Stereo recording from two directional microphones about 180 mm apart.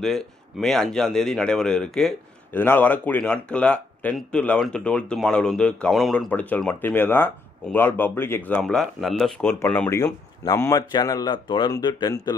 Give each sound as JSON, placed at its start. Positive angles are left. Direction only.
{"t": 0.0, "sound": "speech", "side_deg": 0}